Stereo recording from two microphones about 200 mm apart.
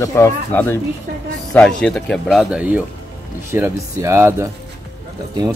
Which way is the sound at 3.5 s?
15° right (ahead or behind).